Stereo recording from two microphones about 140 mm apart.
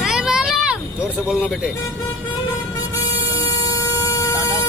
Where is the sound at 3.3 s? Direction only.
25° left (ahead or behind).